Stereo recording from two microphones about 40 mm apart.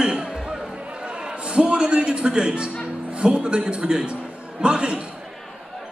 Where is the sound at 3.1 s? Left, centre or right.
Right.